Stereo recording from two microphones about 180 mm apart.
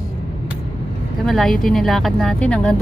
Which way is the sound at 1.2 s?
Centre (ahead or behind).